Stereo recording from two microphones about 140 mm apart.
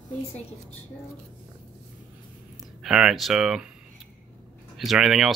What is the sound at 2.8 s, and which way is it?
Speech, 5° right (ahead or behind).